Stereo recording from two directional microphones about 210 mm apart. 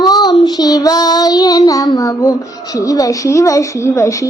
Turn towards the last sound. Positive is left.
turn(degrees=15)  # may be behind; listen again after turning